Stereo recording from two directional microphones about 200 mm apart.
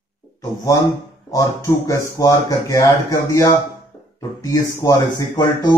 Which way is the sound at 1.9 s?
15° left (ahead or behind).